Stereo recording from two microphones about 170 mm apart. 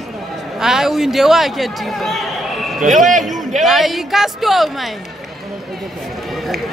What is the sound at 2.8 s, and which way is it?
Speech, 50° right (ahead or behind).